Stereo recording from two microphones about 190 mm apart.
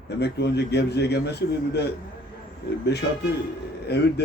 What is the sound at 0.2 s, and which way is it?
Speech, 60° left (ahead or behind).